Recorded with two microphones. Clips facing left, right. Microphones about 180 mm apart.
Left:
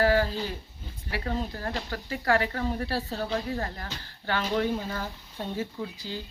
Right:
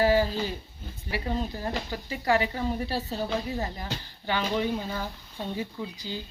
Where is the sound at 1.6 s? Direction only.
20° right (ahead or behind).